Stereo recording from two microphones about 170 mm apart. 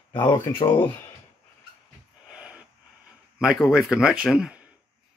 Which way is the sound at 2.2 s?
5° right (ahead or behind).